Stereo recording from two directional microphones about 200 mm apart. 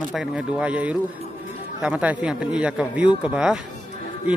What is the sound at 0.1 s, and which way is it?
A man's voice, 5° right (ahead or behind).